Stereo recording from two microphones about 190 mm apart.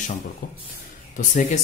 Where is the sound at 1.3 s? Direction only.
40° left (ahead or behind).